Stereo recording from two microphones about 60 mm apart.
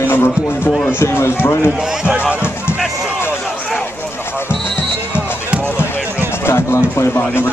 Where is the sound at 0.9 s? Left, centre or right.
Left.